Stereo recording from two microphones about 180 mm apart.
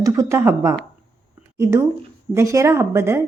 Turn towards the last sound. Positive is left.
turn(degrees=-15)  # may be behind; listen again after turning